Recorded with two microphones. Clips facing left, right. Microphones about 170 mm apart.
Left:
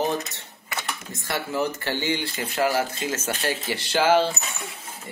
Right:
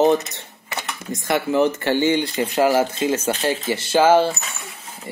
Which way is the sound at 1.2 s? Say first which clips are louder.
Right 8 dB; 20° right (ahead or behind).